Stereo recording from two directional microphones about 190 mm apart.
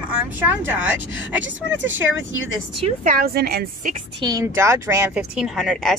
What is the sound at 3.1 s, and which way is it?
Speech, 50° right (ahead or behind).